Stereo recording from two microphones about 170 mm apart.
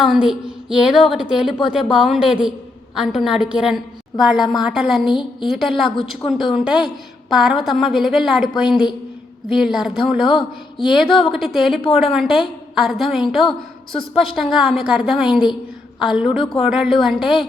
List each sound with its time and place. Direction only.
0.0 s a woman's voice: 5° right (ahead or behind)
13.4 s a woman's voice: 30° left (ahead or behind)
14.5 s a woman's voice: centre (ahead or behind)
16.4 s speech: 30° left (ahead or behind)
16.6 s a woman's voice: 5° right (ahead or behind)